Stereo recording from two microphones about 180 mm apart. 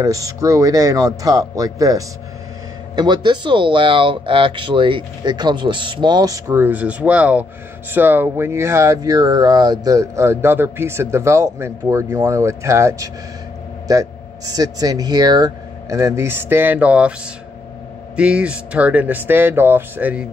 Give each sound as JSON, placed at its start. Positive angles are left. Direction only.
{"t": 0.0, "sound": "speech", "side_deg": -20}
{"t": 18.1, "sound": "speech", "side_deg": -5}